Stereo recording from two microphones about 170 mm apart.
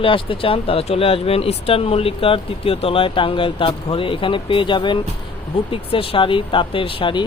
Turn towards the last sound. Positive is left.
turn(degrees=30)  # may be behind; listen again after turning